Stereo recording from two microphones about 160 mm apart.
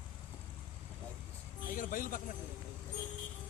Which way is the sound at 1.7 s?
55° left (ahead or behind).